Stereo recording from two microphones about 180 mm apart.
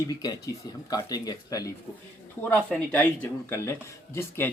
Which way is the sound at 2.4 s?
10° left (ahead or behind).